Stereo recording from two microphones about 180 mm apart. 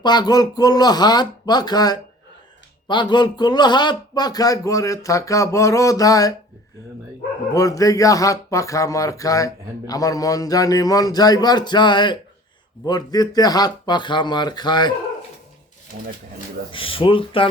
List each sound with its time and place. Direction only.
0.0 s speech: 25° left (ahead or behind)
7.5 s speech: 20° left (ahead or behind)
16.7 s speech: 30° left (ahead or behind)